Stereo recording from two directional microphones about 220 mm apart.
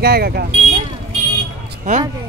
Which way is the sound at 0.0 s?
45° right (ahead or behind).